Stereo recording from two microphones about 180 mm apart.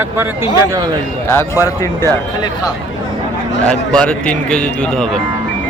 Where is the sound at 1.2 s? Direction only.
15° left (ahead or behind).